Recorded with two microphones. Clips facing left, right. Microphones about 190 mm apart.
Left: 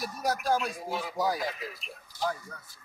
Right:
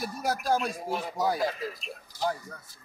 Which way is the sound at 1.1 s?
25° right (ahead or behind).